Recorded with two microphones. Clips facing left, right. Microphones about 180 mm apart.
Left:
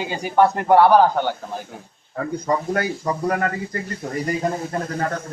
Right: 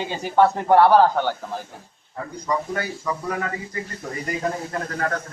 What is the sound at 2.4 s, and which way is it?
Speech, 50° left (ahead or behind).